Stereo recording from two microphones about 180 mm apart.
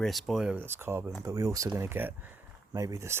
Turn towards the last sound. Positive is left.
turn(degrees=-15)  # may be behind; listen again after turning